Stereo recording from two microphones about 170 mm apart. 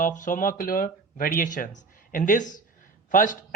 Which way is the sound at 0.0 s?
50° left (ahead or behind).